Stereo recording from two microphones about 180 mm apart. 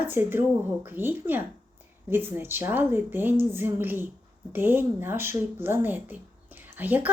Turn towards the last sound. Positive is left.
turn(degrees=-10)  # may be behind; listen again after turning